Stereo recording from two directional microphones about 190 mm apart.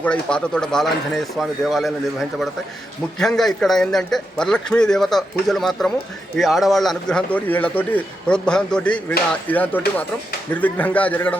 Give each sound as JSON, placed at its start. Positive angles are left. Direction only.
{"t": 0.0, "sound": "a man's voice", "side_deg": 5}